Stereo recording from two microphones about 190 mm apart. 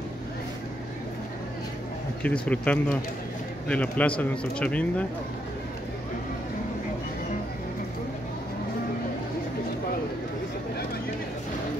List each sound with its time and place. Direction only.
2.2 s speech: 5° left (ahead or behind)